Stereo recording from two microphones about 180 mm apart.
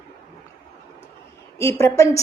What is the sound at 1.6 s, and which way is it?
Speech, 15° left (ahead or behind).